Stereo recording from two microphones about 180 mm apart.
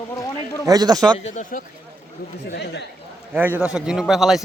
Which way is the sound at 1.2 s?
45° left (ahead or behind).